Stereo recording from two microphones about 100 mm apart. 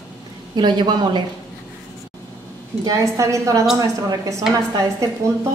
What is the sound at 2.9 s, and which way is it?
A woman's voice, 30° right (ahead or behind).